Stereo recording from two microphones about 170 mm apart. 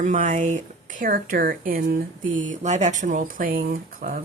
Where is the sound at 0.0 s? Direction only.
45° right (ahead or behind).